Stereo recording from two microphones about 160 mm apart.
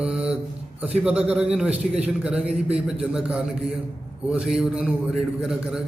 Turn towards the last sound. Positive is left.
turn(degrees=-5)  # may be behind; listen again after turning